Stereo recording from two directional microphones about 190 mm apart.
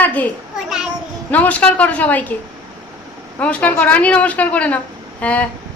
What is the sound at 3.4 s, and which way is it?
Speech, 5° left (ahead or behind).